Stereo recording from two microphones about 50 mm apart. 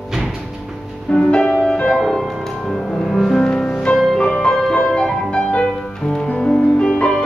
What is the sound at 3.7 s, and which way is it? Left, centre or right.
Music, centre.